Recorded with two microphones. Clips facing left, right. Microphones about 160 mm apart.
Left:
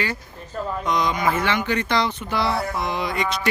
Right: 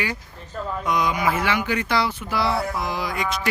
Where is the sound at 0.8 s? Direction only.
10° right (ahead or behind).